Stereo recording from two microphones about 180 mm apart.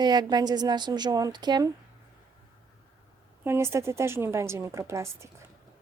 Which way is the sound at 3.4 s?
15° right (ahead or behind).